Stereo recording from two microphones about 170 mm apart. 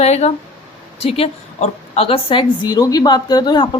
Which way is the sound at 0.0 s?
40° left (ahead or behind).